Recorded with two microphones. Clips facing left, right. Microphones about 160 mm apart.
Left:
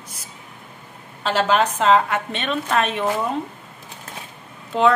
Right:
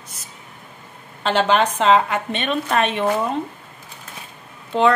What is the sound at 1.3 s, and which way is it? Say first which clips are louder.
A woman's voice: right 1 dB; 5° left (ahead or behind).